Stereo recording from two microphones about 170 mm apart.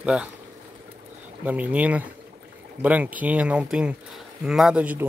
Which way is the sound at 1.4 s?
10° right (ahead or behind).